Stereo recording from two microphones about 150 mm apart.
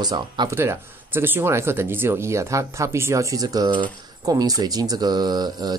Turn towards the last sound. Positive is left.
turn(degrees=-25)  # may be behind; listen again after turning